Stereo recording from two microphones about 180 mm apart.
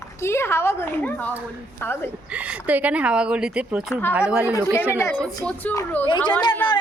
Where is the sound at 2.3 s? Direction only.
5° right (ahead or behind).